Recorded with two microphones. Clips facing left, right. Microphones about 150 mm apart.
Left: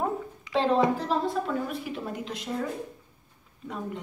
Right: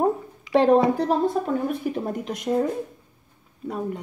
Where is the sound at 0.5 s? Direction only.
55° right (ahead or behind).